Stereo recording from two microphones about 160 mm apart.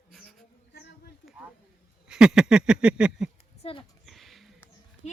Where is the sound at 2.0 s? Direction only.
5° right (ahead or behind).